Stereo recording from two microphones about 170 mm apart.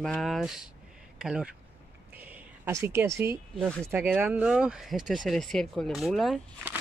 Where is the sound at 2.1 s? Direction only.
10° right (ahead or behind).